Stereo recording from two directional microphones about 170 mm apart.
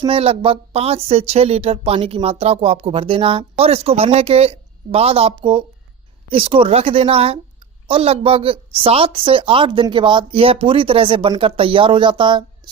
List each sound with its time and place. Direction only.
0.0 s a woman's voice: 35° right (ahead or behind)